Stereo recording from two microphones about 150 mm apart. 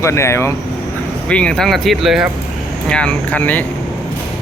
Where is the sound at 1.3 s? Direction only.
5° left (ahead or behind).